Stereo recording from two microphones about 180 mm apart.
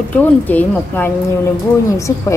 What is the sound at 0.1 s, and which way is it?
A woman's voice, 10° left (ahead or behind).